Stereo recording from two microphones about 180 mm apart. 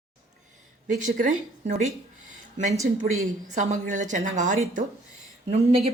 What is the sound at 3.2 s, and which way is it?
A woman's voice, 40° right (ahead or behind).